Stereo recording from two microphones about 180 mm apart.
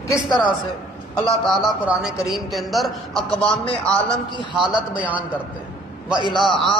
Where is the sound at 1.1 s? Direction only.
5° left (ahead or behind).